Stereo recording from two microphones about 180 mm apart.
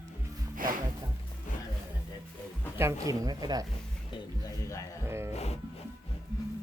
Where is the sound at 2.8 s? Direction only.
15° right (ahead or behind).